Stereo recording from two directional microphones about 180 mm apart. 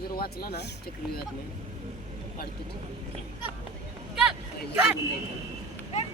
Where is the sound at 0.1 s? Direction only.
60° left (ahead or behind).